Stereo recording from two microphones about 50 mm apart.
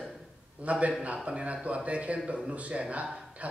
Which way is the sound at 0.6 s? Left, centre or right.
Right.